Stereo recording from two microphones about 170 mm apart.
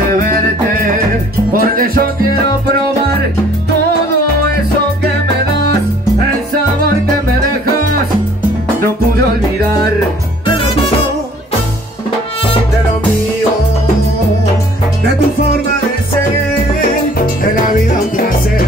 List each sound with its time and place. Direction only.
1.5 s music: 55° right (ahead or behind)
17.4 s music: 55° left (ahead or behind)